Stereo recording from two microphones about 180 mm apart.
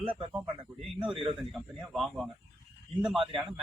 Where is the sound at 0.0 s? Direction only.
30° right (ahead or behind).